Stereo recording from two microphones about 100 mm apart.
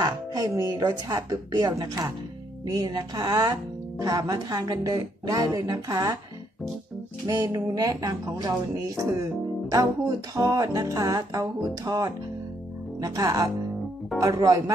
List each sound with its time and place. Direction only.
0.0 s music: 40° right (ahead or behind)
2.6 s speech: 40° right (ahead or behind)
4.0 s music: 40° right (ahead or behind)
7.2 s music: 40° right (ahead or behind)